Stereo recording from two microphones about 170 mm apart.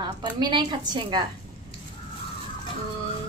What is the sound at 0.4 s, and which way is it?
Speech, 25° right (ahead or behind).